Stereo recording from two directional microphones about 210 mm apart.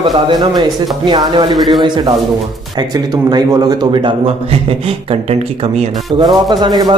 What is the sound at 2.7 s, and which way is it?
Speech, 20° right (ahead or behind).